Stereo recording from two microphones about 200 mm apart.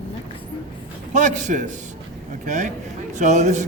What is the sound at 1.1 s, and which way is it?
A man's voice, 35° right (ahead or behind).